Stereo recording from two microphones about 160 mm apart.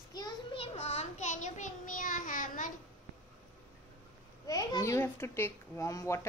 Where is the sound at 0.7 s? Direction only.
40° left (ahead or behind).